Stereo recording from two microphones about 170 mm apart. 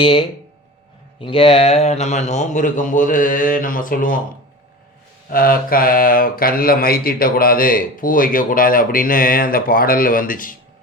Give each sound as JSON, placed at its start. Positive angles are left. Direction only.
{"t": 0.0, "sound": "a man's voice", "side_deg": 30}
{"t": 5.3, "sound": "speech", "side_deg": 60}